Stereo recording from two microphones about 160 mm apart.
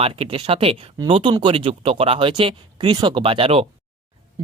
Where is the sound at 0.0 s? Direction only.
35° right (ahead or behind).